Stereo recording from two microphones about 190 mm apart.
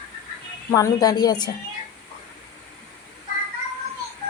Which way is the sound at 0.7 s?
20° left (ahead or behind).